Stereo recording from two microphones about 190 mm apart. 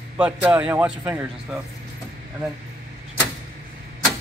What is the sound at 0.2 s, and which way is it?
A man's voice, 5° right (ahead or behind).